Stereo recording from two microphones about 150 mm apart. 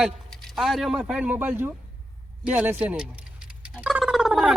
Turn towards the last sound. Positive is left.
turn(degrees=0)  # may be behind; listen again after turning